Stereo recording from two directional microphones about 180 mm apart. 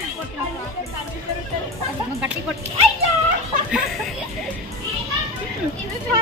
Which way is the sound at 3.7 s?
5° right (ahead or behind).